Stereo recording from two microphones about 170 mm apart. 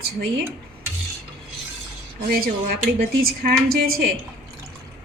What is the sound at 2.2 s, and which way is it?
A woman's voice, 60° right (ahead or behind).